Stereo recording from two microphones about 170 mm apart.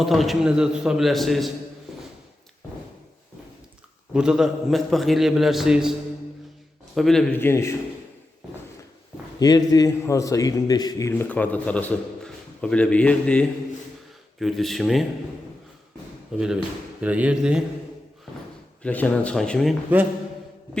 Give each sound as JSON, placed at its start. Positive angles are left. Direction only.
{"t": 0.0, "sound": "a man's voice", "side_deg": 0}
{"t": 4.1, "sound": "a man's voice", "side_deg": -5}
{"t": 6.9, "sound": "a man's voice", "side_deg": 0}
{"t": 7.4, "sound": "a man's voice", "side_deg": 15}
{"t": 9.4, "sound": "a man's voice", "side_deg": 20}
{"t": 16.3, "sound": "a man's voice", "side_deg": -5}
{"t": 18.8, "sound": "a man's voice", "side_deg": 10}